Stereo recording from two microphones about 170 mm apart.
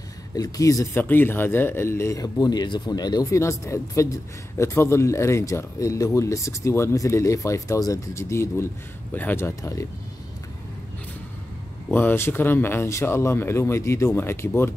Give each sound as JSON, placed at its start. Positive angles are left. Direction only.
{"t": 0.4, "sound": "speech", "side_deg": 20}
{"t": 11.9, "sound": "speech", "side_deg": 10}